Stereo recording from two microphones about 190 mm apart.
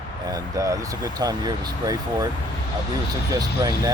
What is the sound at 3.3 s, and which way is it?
Speech, 20° right (ahead or behind).